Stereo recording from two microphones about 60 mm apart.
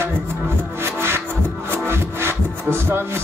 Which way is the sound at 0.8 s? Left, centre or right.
Right.